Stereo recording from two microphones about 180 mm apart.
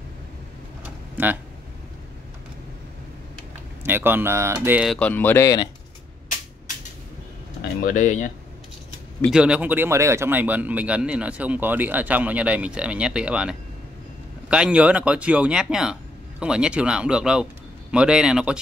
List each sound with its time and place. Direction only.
0.8 s a sound: 10° right (ahead or behind)
3.8 s speech: 10° right (ahead or behind)
4.8 s speech: 5° left (ahead or behind)
7.8 s speech: 45° left (ahead or behind)
9.3 s speech: 5° right (ahead or behind)